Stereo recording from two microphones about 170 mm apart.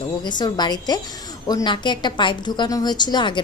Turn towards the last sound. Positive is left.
turn(degrees=25)  # may be behind; listen again after turning